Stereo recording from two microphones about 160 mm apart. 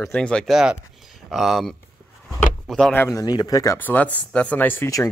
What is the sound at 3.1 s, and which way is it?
Speech, 25° left (ahead or behind).